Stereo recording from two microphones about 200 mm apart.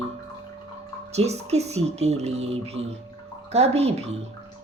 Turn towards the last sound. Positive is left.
turn(degrees=-30)  # may be behind; listen again after turning